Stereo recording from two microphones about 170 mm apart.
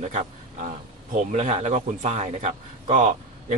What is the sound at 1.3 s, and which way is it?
Speech, 40° right (ahead or behind).